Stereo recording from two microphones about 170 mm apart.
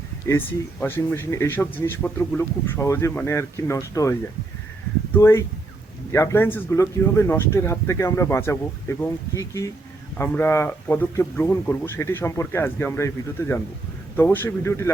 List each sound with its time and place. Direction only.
0.3 s speech: 15° left (ahead or behind)
14.2 s speech: 15° left (ahead or behind)